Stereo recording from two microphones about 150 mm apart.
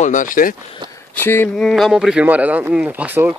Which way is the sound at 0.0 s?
60° left (ahead or behind).